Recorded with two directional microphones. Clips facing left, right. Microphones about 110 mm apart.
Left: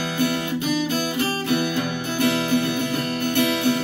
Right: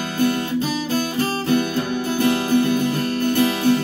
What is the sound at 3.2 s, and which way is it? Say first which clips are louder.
Music: right 2 dB; 35° right (ahead or behind).